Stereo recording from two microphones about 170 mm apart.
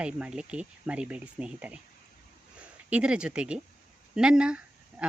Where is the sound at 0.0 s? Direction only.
5° right (ahead or behind).